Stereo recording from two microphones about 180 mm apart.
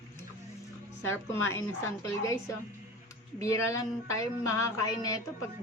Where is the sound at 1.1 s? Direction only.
15° left (ahead or behind).